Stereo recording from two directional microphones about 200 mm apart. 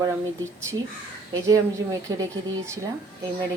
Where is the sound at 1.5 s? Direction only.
15° right (ahead or behind).